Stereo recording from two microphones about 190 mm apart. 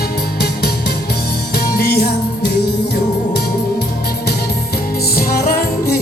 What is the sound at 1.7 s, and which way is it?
Music, 60° left (ahead or behind).